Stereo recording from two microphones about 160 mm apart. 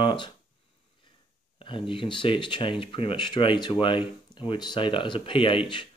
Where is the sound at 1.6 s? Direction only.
35° left (ahead or behind).